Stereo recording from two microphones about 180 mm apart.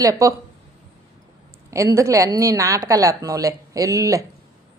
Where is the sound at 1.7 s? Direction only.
15° right (ahead or behind).